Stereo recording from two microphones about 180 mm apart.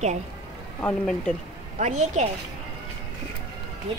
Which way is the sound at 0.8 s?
5° left (ahead or behind).